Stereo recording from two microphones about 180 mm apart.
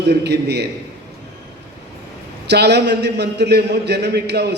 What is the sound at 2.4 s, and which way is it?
A man's voice, 70° right (ahead or behind).